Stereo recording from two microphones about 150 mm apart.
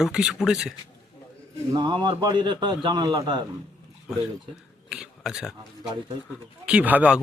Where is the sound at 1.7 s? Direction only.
30° right (ahead or behind).